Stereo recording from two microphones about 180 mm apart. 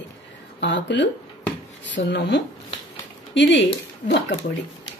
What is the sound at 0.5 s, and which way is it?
Cutlery, 80° left.